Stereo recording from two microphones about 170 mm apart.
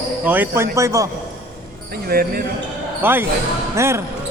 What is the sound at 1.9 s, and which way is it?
Speech, 60° right (ahead or behind).